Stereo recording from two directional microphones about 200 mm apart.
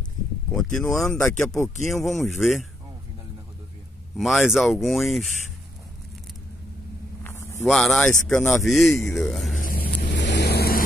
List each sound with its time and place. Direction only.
0.5 s speech: 5° left (ahead or behind)
4.2 s speech: centre (ahead or behind)
7.2 s a sound: 15° left (ahead or behind)
7.6 s speech: centre (ahead or behind)
9.6 s vehicle: 45° left (ahead or behind)